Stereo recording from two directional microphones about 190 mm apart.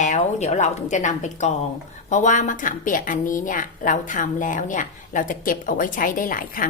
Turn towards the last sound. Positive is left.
turn(degrees=45)  # may be behind; listen again after turning